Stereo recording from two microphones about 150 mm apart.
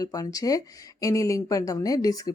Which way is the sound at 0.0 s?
25° left (ahead or behind).